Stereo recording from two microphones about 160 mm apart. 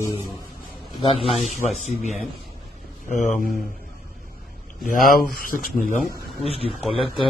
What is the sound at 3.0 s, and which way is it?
Speech, 50° left (ahead or behind).